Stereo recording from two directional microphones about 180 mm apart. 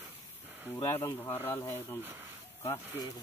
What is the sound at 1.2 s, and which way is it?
Speech, 10° left (ahead or behind).